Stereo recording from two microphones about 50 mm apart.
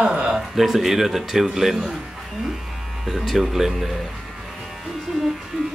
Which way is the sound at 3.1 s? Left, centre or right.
Centre.